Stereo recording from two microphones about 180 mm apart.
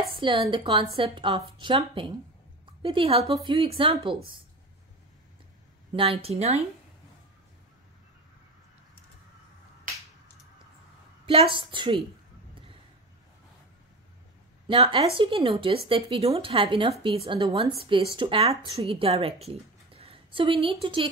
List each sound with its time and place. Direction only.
0.1 s a woman's voice: 30° right (ahead or behind)
5.9 s speech: 35° right (ahead or behind)
11.2 s a woman's voice: 30° right (ahead or behind)
14.7 s a woman's voice: 30° right (ahead or behind)